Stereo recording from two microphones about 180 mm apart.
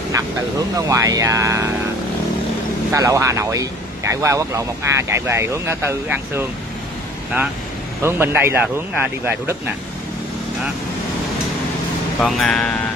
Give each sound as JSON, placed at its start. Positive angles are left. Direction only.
{"t": 0.1, "sound": "speech", "side_deg": -20}
{"t": 2.9, "sound": "speech", "side_deg": -15}
{"t": 8.0, "sound": "speech", "side_deg": -10}
{"t": 12.2, "sound": "speech", "side_deg": 0}